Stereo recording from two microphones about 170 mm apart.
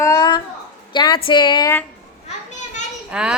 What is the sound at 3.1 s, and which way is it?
Speech, 5° right (ahead or behind).